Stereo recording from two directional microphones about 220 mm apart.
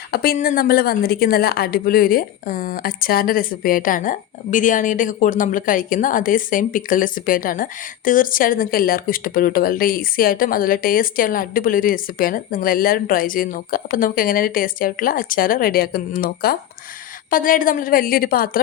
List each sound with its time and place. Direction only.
0.1 s a woman's voice: 45° left (ahead or behind)